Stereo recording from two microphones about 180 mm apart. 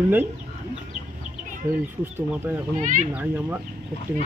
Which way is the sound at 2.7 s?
45° right (ahead or behind).